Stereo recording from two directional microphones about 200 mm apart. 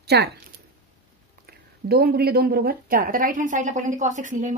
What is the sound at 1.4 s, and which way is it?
Speech, 50° right (ahead or behind).